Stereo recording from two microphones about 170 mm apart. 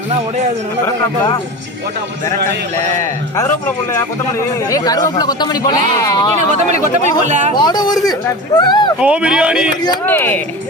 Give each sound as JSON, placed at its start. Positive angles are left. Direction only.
{"t": 4.7, "sound": "speech", "side_deg": 20}
{"t": 7.3, "sound": "speech", "side_deg": -45}
{"t": 7.5, "sound": "speech", "side_deg": 25}
{"t": 9.0, "sound": "speech", "side_deg": -5}
{"t": 10.1, "sound": "speech", "side_deg": 10}